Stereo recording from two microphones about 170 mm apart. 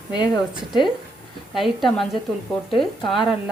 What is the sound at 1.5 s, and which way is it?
Speech, centre (ahead or behind).